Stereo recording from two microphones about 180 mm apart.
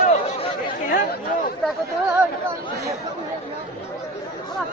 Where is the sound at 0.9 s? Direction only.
55° left (ahead or behind).